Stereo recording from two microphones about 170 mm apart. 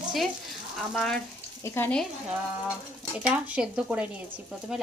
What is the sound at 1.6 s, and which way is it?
Speech, 15° left (ahead or behind).